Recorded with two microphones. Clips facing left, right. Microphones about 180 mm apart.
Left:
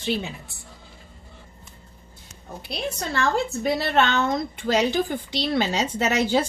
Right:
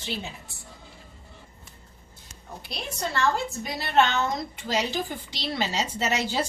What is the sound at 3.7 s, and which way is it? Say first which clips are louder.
A woman's voice: right 1 dB; 60° left (ahead or behind).